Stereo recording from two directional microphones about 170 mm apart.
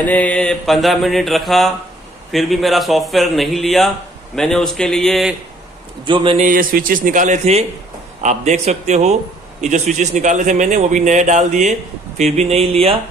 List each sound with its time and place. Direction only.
0.0 s mantra: 10° left (ahead or behind)
6.0 s a man's voice: 30° right (ahead or behind)
6.3 s a man's voice: 50° right (ahead or behind); by 13.0 s 35° right (ahead or behind)